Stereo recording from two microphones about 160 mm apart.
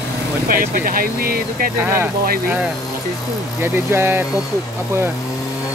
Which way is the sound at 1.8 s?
15° right (ahead or behind).